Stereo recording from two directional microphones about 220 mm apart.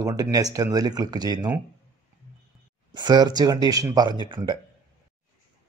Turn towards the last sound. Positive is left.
turn(degrees=-20)  # may be behind; listen again after turning